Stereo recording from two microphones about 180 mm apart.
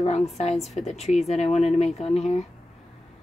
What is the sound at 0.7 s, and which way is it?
Speech, 40° left (ahead or behind).